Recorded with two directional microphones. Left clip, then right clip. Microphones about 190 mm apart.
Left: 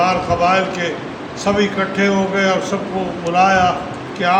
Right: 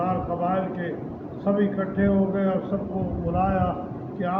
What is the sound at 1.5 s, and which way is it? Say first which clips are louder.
Speech: left 9 dB; 20° left (ahead or behind).